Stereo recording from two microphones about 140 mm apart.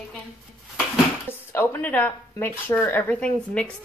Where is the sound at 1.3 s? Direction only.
15° left (ahead or behind).